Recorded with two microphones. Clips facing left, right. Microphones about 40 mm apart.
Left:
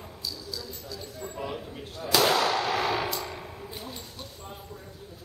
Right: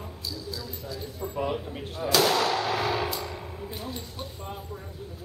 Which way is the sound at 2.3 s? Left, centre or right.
Centre.